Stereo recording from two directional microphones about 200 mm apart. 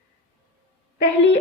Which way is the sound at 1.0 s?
60° left (ahead or behind).